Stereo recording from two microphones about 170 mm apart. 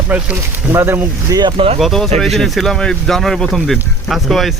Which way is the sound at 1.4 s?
30° right (ahead or behind).